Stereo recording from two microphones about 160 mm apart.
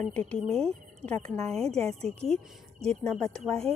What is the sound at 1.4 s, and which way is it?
Speech, 40° right (ahead or behind).